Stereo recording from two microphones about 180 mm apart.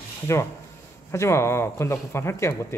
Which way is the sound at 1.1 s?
15° left (ahead or behind).